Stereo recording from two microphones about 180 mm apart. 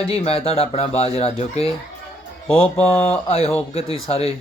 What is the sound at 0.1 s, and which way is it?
Speech, 35° left (ahead or behind).